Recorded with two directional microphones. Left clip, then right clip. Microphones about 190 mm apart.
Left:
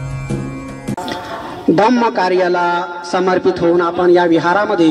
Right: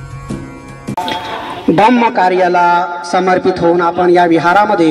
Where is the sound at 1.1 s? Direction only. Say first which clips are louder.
Right 5 dB; 15° right (ahead or behind).